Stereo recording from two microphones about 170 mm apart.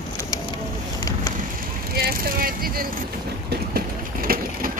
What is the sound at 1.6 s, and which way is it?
Speech, 60° right (ahead or behind).